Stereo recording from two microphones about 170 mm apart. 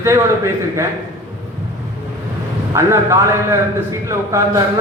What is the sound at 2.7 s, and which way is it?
A man's voice, 15° right (ahead or behind).